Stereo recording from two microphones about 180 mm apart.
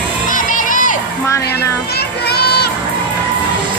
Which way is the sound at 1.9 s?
60° left (ahead or behind).